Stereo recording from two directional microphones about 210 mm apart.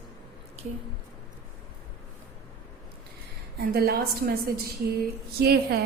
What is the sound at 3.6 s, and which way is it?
Speech, 45° right (ahead or behind).